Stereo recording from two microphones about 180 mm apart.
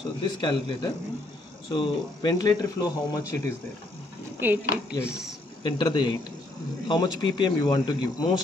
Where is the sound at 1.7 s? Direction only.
25° left (ahead or behind).